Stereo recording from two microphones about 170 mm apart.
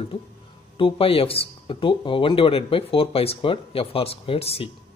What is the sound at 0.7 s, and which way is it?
Speech, 30° left (ahead or behind).